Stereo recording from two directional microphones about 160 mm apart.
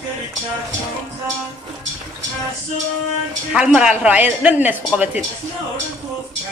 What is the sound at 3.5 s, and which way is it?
Speech, 5° right (ahead or behind).